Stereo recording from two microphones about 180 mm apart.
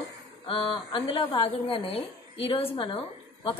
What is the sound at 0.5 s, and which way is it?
A woman's voice, 30° left (ahead or behind).